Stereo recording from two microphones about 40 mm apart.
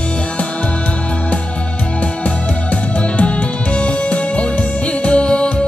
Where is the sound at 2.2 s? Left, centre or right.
Left.